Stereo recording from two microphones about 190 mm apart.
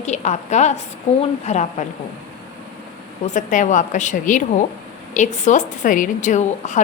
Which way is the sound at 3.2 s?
40° left (ahead or behind).